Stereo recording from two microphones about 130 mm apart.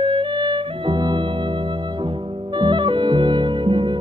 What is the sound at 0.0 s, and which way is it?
Music, 35° right (ahead or behind).